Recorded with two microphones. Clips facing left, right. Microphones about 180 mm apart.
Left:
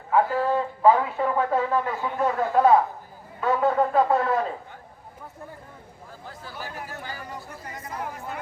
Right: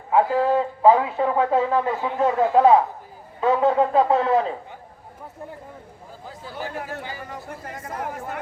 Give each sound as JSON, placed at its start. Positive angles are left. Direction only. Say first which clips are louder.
{"t": 0.1, "sound": "speech", "louder": "right 3 dB", "side_deg": -20}
{"t": 6.2, "sound": "speech", "louder": "right 5 dB", "side_deg": -15}
{"t": 7.3, "sound": "speech", "louder": "right 3 dB", "side_deg": -50}